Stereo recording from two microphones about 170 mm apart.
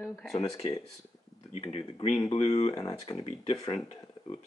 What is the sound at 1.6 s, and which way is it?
Speech, 35° left (ahead or behind).